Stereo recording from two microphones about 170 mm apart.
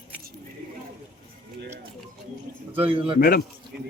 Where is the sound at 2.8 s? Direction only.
30° right (ahead or behind).